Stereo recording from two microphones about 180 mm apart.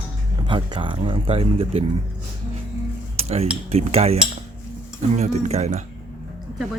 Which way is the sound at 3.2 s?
35° right (ahead or behind).